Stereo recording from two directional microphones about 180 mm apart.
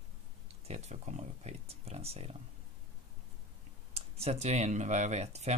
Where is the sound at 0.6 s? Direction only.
35° right (ahead or behind).